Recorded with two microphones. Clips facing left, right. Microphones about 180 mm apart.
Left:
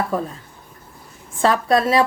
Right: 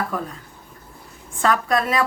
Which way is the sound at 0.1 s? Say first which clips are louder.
Left 5 dB; 25° left (ahead or behind).